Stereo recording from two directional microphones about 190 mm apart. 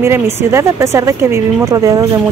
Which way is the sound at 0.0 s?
15° right (ahead or behind).